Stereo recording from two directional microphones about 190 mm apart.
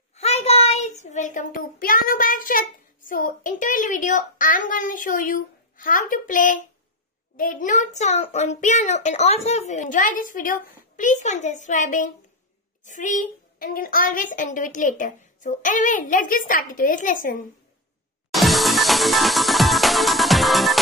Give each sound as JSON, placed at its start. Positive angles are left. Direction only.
{"t": 0.1, "sound": "a child's voice", "side_deg": 35}
{"t": 18.3, "sound": "music", "side_deg": 0}